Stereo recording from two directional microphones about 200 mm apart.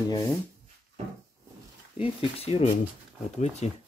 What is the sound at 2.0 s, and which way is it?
Speech, 30° left (ahead or behind).